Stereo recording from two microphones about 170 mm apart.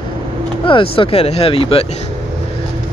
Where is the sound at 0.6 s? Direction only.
30° left (ahead or behind).